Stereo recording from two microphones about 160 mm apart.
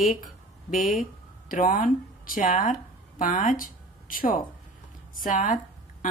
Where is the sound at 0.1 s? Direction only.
60° left (ahead or behind).